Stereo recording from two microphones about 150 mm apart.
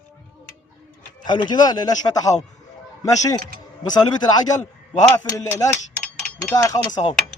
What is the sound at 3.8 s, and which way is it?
Speech, 25° left (ahead or behind).